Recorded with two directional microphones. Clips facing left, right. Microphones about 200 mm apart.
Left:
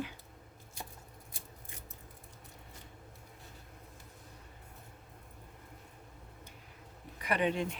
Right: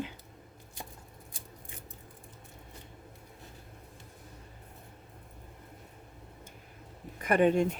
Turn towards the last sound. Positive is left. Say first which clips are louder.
# right 7 dB
turn(degrees=-45)  # may be behind; listen again after turning